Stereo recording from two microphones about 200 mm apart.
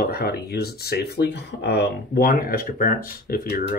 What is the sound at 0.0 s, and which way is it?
Speech, 50° left (ahead or behind).